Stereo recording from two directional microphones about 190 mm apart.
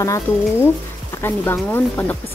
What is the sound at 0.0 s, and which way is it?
Speech, 15° left (ahead or behind).